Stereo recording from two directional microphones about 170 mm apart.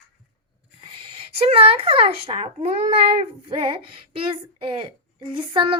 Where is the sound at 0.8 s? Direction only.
30° right (ahead or behind).